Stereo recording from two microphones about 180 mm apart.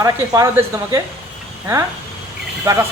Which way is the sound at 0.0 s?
20° right (ahead or behind).